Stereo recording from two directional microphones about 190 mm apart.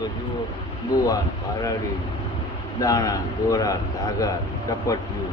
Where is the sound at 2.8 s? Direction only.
20° left (ahead or behind).